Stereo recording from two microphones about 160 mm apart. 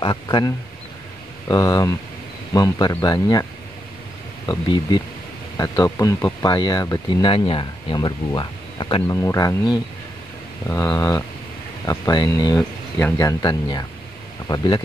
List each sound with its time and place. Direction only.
0.0 s speech: 25° left (ahead or behind)
1.5 s speech: 25° left (ahead or behind)
4.5 s speech: 30° left (ahead or behind)
9.0 s speech: 20° left (ahead or behind)
10.7 s speech: 15° left (ahead or behind)